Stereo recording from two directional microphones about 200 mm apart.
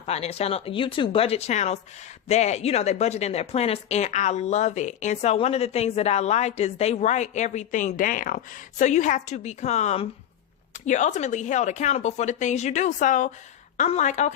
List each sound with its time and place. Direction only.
0.0 s a woman's voice: 30° left (ahead or behind)